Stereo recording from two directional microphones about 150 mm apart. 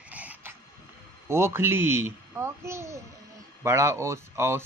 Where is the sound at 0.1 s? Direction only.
10° right (ahead or behind).